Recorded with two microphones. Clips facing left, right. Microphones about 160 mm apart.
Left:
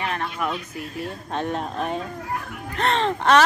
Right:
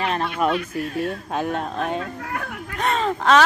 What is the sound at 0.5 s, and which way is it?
Speech, 75° right (ahead or behind).